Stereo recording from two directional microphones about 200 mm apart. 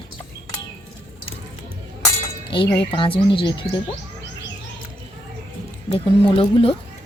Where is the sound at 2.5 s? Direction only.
25° left (ahead or behind).